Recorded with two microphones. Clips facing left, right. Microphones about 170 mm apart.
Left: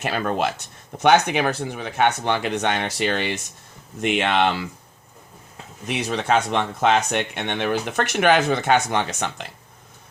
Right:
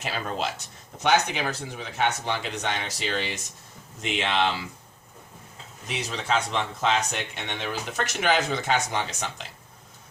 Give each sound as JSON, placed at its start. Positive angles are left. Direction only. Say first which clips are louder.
{"t": 0.0, "sound": "speech", "louder": "left 7 dB", "side_deg": 60}
{"t": 5.9, "sound": "speech", "louder": "left 6 dB", "side_deg": 60}